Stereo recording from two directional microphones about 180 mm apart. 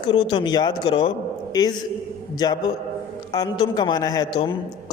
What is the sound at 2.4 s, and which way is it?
Speech, 20° left (ahead or behind).